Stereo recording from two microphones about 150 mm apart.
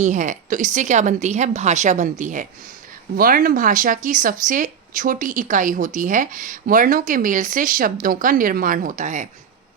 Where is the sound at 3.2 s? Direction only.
70° right (ahead or behind).